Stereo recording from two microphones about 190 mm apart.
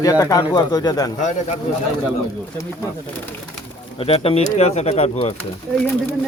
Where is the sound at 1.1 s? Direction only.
40° left (ahead or behind).